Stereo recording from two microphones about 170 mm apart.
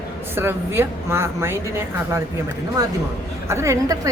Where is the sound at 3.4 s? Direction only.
15° right (ahead or behind).